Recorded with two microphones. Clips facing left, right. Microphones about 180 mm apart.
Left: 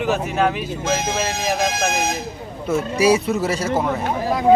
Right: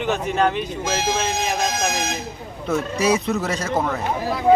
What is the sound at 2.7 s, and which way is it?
Speech, 10° left (ahead or behind).